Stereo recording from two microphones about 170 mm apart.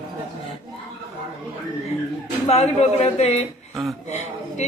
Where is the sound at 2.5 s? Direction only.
40° left (ahead or behind).